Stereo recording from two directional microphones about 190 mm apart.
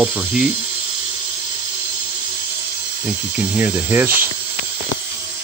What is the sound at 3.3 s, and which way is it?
Speech, 5° right (ahead or behind).